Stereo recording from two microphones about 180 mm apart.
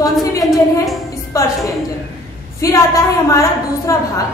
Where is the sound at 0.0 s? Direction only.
20° left (ahead or behind).